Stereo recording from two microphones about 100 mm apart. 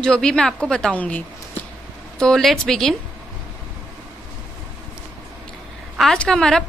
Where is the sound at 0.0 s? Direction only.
5° left (ahead or behind).